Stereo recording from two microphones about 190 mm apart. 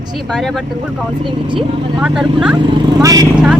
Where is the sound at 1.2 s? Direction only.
25° right (ahead or behind).